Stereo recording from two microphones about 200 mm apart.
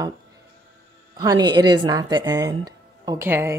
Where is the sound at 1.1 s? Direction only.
20° right (ahead or behind).